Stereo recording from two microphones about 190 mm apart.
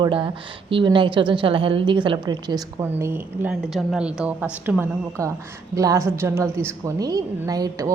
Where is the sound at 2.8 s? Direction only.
10° right (ahead or behind).